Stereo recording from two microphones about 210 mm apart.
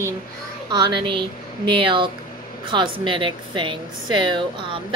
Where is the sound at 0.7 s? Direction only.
20° right (ahead or behind).